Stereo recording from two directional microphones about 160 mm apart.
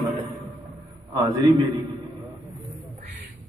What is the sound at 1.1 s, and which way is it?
Speech, 25° right (ahead or behind).